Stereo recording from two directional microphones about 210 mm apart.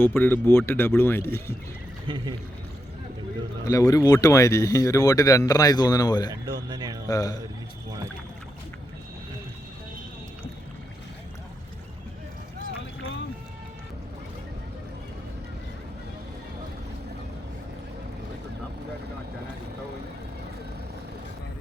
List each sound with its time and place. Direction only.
0.0 s speech: 10° left (ahead or behind)
2.0 s speech: 20° right (ahead or behind)
3.7 s speech: 15° left (ahead or behind)
6.3 s speech: 20° right (ahead or behind)
7.1 s speech: 15° left (ahead or behind)